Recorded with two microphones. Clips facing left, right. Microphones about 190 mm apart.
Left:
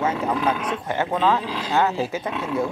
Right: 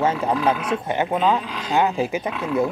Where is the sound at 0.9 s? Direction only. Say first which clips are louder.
Even; 20° right (ahead or behind).